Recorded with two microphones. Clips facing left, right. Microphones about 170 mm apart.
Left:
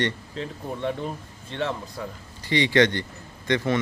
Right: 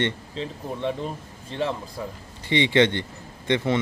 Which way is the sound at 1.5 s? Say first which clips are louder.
Right 1 dB; 30° right (ahead or behind).